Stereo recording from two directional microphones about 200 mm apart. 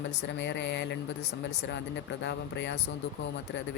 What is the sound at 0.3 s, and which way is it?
Speech, 60° left (ahead or behind).